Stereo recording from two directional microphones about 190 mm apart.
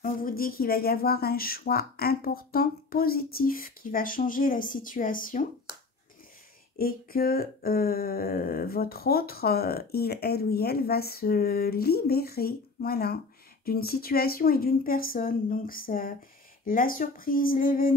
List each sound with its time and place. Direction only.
0.0 s speech: 50° left (ahead or behind)
6.8 s speech: 50° left (ahead or behind)